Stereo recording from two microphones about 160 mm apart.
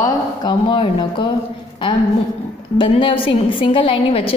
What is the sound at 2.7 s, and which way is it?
A woman's voice, 35° left (ahead or behind).